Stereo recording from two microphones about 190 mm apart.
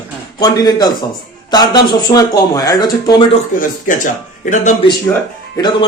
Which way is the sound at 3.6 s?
45° left (ahead or behind).